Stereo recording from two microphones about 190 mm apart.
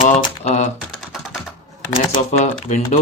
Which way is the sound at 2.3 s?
35° left (ahead or behind).